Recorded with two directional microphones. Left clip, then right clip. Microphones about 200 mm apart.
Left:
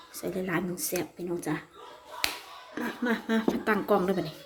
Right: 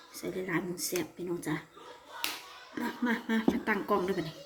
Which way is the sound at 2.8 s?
20° left (ahead or behind).